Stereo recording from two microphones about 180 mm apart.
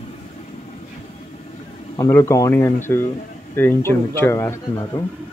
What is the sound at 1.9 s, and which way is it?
Speech, 20° left (ahead or behind).